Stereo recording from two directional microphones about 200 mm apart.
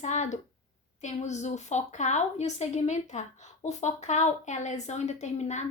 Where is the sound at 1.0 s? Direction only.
35° left (ahead or behind).